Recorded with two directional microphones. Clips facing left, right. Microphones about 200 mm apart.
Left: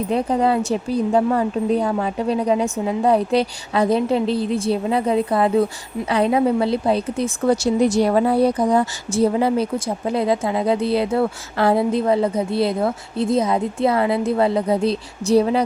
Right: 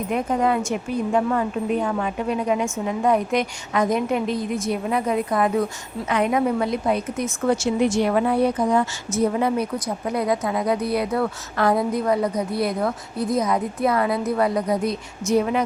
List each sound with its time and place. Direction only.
0.1 s a woman's voice: 30° left (ahead or behind)